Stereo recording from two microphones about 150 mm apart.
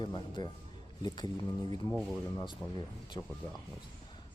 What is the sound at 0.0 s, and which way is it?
A man's voice, 30° left (ahead or behind).